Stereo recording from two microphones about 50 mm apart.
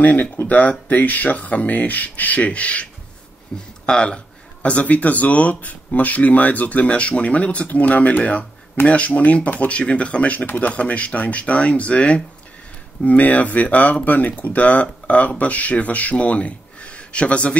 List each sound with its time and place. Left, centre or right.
0.0 s speech: left